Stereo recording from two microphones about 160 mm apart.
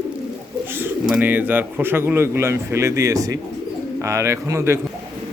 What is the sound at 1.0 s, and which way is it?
Speech, 10° right (ahead or behind).